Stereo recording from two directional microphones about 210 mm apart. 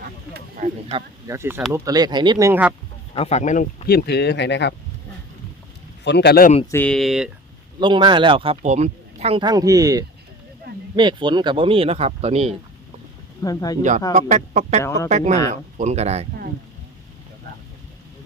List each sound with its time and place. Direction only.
0.3 s a sound: 35° right (ahead or behind)
1.3 s speech: 10° right (ahead or behind)
3.2 s speech: 30° left (ahead or behind); by 4.7 s 55° left (ahead or behind)
6.1 s speech: 55° left (ahead or behind)
6.7 s speech: 10° left (ahead or behind)
7.8 s speech: 20° right (ahead or behind)
13.4 s speech: 15° left (ahead or behind)
14.1 s speech: 35° right (ahead or behind)
14.8 s speech: 15° left (ahead or behind)
15.1 s speech: 35° right (ahead or behind)